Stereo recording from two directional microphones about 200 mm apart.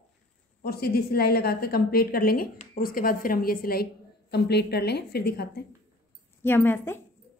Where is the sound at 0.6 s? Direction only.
50° left (ahead or behind).